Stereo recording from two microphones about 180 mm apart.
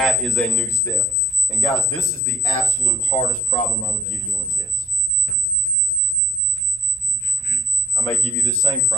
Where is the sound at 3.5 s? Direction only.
45° left (ahead or behind).